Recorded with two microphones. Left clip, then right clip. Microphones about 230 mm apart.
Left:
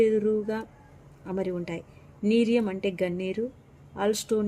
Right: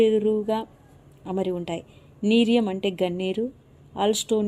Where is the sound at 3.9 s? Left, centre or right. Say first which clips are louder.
Right 4 dB; centre.